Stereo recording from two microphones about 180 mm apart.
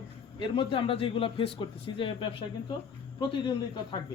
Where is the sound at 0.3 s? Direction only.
25° left (ahead or behind).